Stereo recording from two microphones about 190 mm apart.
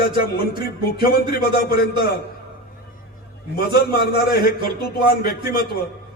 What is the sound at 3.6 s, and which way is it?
A man's voice, 55° left (ahead or behind).